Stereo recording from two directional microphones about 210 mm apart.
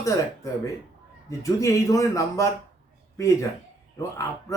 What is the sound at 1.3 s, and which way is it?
Speech, 15° left (ahead or behind).